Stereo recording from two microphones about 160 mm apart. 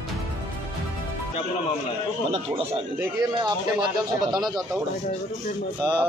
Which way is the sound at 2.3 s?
30° right (ahead or behind).